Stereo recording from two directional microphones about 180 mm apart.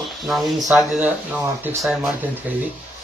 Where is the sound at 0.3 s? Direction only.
Centre (ahead or behind).